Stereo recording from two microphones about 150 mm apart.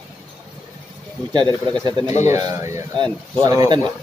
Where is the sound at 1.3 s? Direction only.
30° right (ahead or behind).